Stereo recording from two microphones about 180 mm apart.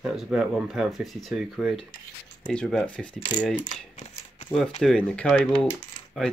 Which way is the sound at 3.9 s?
30° left (ahead or behind).